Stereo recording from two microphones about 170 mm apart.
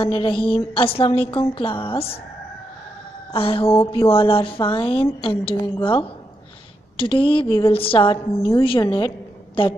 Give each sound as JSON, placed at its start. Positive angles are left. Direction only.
{"t": 0.0, "sound": "music", "side_deg": 30}
{"t": 3.3, "sound": "music", "side_deg": 35}